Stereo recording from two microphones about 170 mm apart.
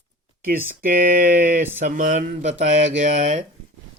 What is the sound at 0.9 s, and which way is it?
Speech, 50° right (ahead or behind).